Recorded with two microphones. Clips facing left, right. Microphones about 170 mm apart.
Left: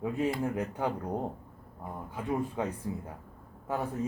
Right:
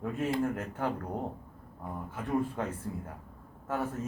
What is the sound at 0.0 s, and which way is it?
A man's voice, 10° left (ahead or behind).